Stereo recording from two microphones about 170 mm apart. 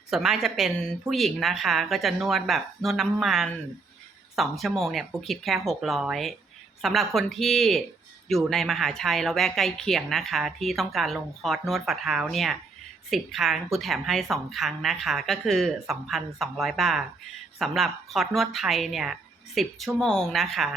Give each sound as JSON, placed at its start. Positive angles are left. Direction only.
{"t": 0.1, "sound": "speech", "side_deg": 0}